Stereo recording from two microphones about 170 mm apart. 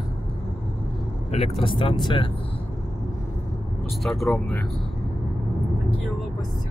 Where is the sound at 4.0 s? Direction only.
Centre (ahead or behind).